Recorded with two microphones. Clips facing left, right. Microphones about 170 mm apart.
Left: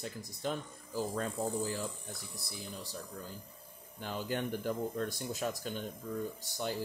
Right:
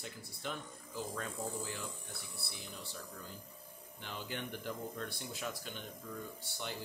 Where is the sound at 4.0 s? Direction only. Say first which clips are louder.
Left 7 dB; 45° left (ahead or behind).